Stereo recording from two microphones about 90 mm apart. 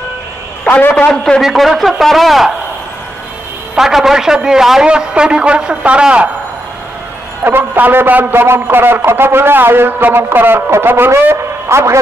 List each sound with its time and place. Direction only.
0.7 s a man's voice: 20° left (ahead or behind)
1.4 s a man's voice: centre (ahead or behind)
3.7 s a man's voice: 5° right (ahead or behind)
7.4 s a man's voice: 20° right (ahead or behind)